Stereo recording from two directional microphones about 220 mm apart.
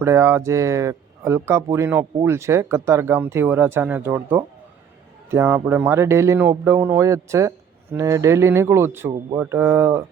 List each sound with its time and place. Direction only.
0.0 s speech: 10° right (ahead or behind)